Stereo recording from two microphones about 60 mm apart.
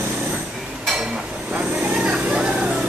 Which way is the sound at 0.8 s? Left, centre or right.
Centre.